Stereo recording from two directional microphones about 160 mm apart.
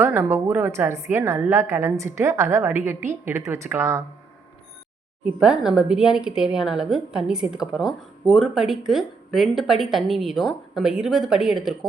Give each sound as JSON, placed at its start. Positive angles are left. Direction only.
{"t": 0.0, "sound": "a woman's voice", "side_deg": -15}
{"t": 5.2, "sound": "a woman's voice", "side_deg": -5}